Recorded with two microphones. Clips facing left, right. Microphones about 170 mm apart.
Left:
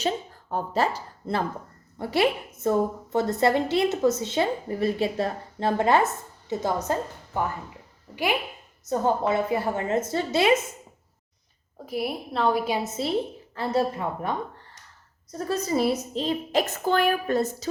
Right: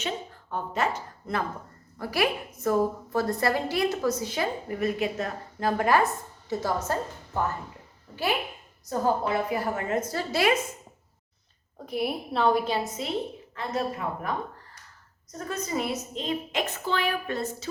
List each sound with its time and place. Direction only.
0.5 s a woman's voice: 35° left (ahead or behind)
11.9 s a woman's voice: centre (ahead or behind)
12.6 s speech: 15° left (ahead or behind)
13.6 s a woman's voice: 30° left (ahead or behind)